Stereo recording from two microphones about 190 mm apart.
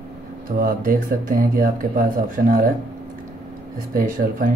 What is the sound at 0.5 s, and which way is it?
Speech, 50° right (ahead or behind).